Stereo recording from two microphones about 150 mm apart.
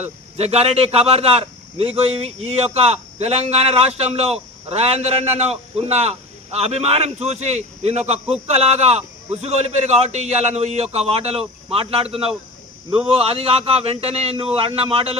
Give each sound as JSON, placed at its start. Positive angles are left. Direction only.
{"t": 0.0, "sound": "a man's voice", "side_deg": -45}